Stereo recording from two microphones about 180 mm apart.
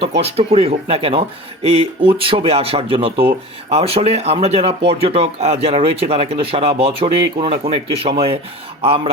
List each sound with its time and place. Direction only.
0.2 s speech: 35° right (ahead or behind)